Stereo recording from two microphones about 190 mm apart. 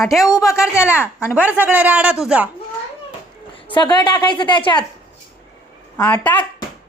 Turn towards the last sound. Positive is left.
turn(degrees=10)  # may be behind; listen again after turning